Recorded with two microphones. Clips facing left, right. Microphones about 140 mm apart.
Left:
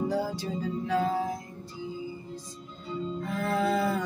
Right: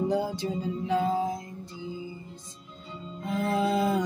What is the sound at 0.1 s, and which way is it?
Music, 20° right (ahead or behind).